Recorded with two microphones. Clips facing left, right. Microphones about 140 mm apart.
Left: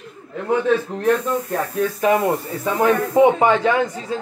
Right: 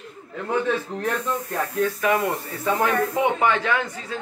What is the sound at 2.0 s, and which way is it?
Speech, 25° left (ahead or behind).